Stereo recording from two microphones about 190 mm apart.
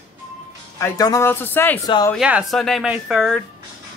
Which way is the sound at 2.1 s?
Centre (ahead or behind).